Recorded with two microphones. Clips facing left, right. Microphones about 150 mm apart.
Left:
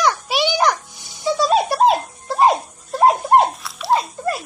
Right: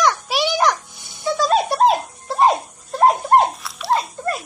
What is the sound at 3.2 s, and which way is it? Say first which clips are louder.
Dog: left 1 dB; 5° left (ahead or behind).